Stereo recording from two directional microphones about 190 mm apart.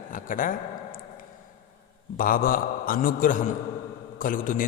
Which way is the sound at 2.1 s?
50° left (ahead or behind).